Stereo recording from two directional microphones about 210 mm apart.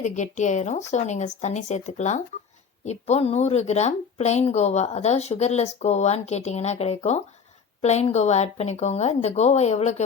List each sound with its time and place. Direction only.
0.0 s speech: 35° left (ahead or behind)